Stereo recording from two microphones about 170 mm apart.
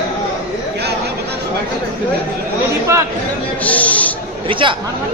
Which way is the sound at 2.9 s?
15° right (ahead or behind).